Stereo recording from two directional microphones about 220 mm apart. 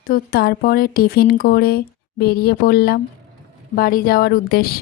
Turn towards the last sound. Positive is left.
turn(degrees=45)  # may be behind; listen again after turning